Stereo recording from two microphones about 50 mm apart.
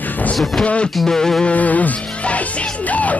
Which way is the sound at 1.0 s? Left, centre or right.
Centre.